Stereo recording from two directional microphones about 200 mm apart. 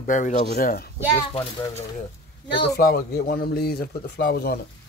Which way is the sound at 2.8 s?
45° left (ahead or behind).